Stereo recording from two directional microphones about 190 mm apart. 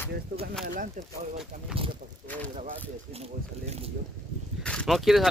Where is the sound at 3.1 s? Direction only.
35° right (ahead or behind).